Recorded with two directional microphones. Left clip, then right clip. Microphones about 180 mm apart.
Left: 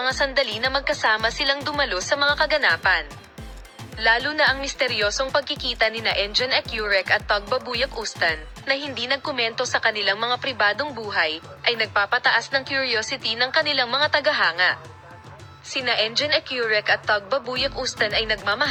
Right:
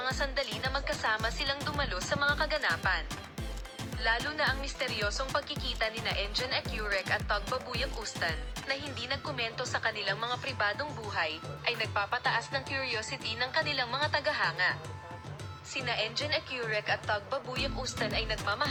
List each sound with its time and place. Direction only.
0.0 s speech: 50° left (ahead or behind)